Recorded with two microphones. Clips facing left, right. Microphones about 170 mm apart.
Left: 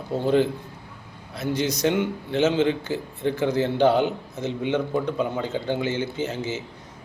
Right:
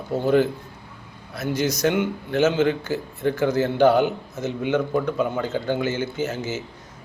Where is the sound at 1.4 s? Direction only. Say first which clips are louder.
Right 1 dB; 30° left (ahead or behind).